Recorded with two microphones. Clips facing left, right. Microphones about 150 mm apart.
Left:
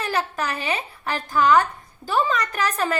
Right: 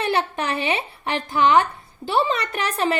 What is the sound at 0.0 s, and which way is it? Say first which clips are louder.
A woman's voice: right 3 dB; 30° right (ahead or behind).